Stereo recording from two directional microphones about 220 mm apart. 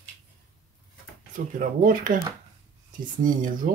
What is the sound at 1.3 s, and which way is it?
Speech, 35° right (ahead or behind).